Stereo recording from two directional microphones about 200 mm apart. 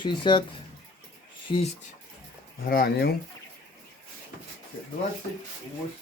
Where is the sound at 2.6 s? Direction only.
50° left (ahead or behind).